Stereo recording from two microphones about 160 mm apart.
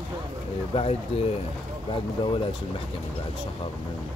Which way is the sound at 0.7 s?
40° left (ahead or behind).